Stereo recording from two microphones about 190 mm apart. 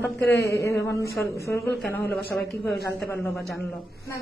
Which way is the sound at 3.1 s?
5° left (ahead or behind).